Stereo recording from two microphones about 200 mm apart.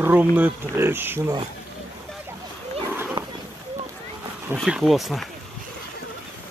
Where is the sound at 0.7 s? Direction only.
10° right (ahead or behind).